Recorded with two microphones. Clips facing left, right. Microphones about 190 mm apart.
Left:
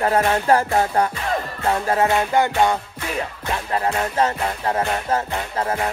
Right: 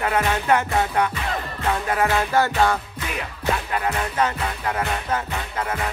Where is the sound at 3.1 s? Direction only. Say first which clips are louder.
Even; 30° left (ahead or behind).